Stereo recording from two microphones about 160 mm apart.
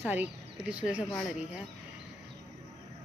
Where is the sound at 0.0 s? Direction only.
10° right (ahead or behind).